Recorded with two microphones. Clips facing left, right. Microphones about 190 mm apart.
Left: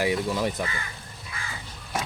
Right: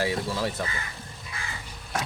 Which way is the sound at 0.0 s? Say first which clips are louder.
Left 2 dB; 20° left (ahead or behind).